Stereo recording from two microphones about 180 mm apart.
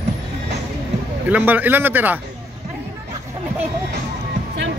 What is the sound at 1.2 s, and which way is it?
Speech, 10° right (ahead or behind).